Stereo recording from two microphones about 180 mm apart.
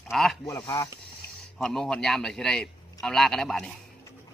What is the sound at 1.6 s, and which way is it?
A man's voice, centre (ahead or behind).